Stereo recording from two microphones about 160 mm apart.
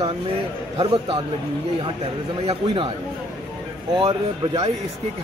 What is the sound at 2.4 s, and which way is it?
Speech, 40° right (ahead or behind).